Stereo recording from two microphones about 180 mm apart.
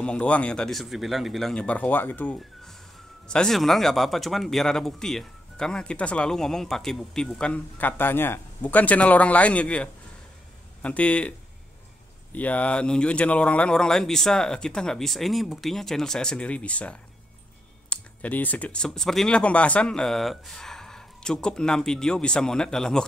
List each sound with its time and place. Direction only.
0.0 s speech: 5° left (ahead or behind)